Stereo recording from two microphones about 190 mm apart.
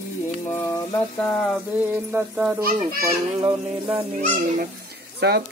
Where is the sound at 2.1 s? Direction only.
5° right (ahead or behind).